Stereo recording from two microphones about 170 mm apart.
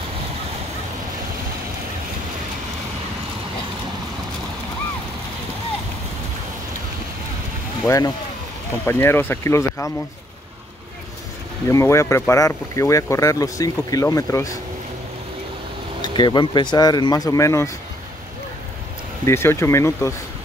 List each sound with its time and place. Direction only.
7.8 s speech: 20° left (ahead or behind)
11.6 s speech: 15° left (ahead or behind)
16.1 s speech: 25° left (ahead or behind)
19.2 s speech: 15° left (ahead or behind)